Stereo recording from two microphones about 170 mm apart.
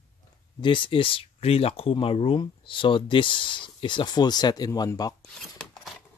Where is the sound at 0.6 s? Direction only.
30° left (ahead or behind).